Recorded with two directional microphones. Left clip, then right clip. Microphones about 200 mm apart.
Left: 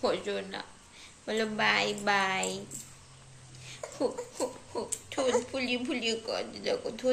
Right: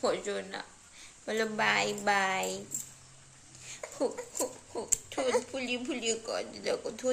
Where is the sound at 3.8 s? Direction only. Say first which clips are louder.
Left 2 dB; 5° right (ahead or behind).